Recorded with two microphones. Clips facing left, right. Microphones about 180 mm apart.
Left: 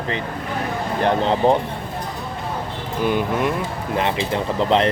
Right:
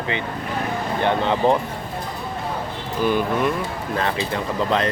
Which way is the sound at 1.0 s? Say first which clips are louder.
Left 2 dB; 35° left (ahead or behind).